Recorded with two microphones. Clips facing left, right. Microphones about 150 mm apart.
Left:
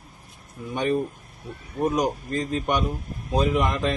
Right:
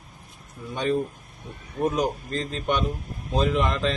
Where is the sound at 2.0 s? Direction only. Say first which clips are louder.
Left 1 dB; 10° left (ahead or behind).